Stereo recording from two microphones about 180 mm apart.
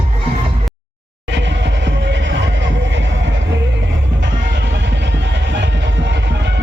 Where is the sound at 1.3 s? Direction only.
80° right.